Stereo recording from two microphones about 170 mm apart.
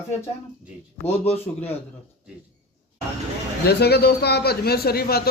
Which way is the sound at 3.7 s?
70° left (ahead or behind).